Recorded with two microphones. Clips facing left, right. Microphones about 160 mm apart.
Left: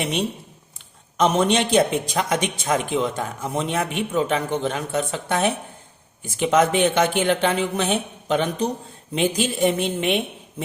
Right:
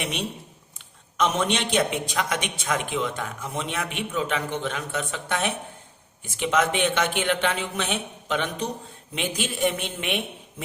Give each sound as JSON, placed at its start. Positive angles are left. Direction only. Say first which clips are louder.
{"t": 0.0, "sound": "a man's voice", "louder": "left 6 dB", "side_deg": 35}